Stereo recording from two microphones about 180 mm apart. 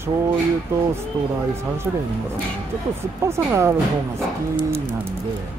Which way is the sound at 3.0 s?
15° right (ahead or behind).